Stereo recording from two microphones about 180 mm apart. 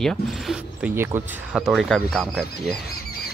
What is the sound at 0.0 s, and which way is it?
Speech, 5° left (ahead or behind).